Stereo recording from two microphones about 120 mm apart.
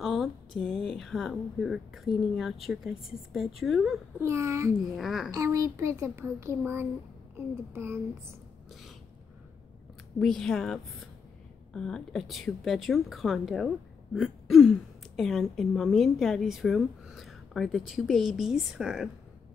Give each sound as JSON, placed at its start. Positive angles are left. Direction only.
{"t": 0.0, "sound": "a sound", "side_deg": 0}
{"t": 0.7, "sound": "speech", "side_deg": 0}
{"t": 4.2, "sound": "a child's voice", "side_deg": -25}
{"t": 4.7, "sound": "speech", "side_deg": 0}
{"t": 5.3, "sound": "a child's voice", "side_deg": -25}
{"t": 10.1, "sound": "speech", "side_deg": 5}